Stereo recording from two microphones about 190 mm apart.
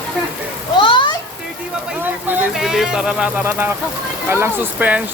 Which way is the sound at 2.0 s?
5° right (ahead or behind).